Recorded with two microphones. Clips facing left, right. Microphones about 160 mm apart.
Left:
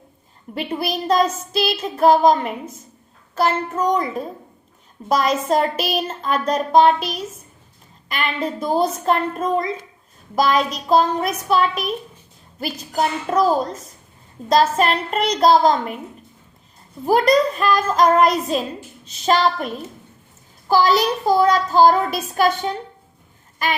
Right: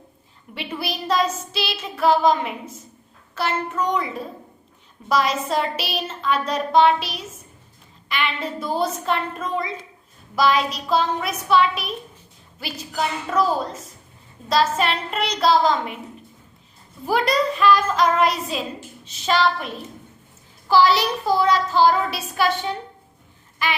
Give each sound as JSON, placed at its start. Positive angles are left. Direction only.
{"t": 0.5, "sound": "a woman's voice", "side_deg": 45}
{"t": 14.5, "sound": "a woman's voice", "side_deg": 45}
{"t": 17.1, "sound": "a woman's voice", "side_deg": 45}